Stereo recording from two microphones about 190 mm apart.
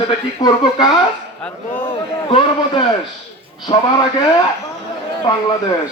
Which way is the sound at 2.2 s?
25° left (ahead or behind).